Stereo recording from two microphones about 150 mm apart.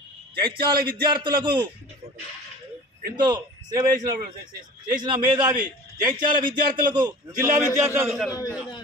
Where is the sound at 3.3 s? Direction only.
25° right (ahead or behind).